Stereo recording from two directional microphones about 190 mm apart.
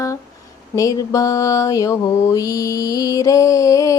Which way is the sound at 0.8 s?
15° left (ahead or behind).